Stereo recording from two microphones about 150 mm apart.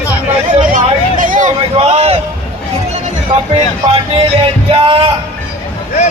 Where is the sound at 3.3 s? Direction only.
35° right (ahead or behind).